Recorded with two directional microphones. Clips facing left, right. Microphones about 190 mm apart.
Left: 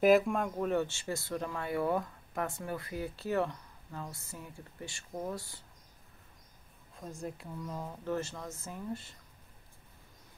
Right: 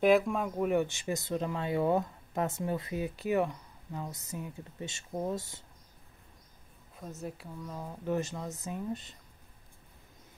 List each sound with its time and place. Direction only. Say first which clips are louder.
0.0 s speech: even; centre (ahead or behind); by 5.6 s 20° right (ahead or behind)
7.0 s speech: even; 5° right (ahead or behind)
8.0 s speech: right 4 dB; 15° right (ahead or behind)